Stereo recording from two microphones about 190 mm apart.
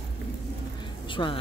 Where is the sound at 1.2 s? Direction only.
25° left (ahead or behind).